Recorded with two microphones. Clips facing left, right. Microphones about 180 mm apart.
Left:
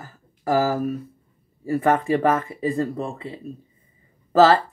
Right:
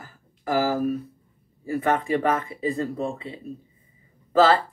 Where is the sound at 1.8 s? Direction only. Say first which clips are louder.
Left 3 dB; 45° left (ahead or behind).